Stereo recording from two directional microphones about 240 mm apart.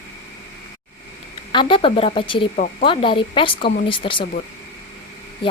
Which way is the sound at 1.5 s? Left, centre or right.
Left.